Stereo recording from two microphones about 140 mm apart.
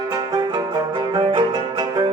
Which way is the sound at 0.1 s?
30° right (ahead or behind).